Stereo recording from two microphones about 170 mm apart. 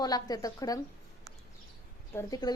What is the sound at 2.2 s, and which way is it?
Speech, 20° left (ahead or behind).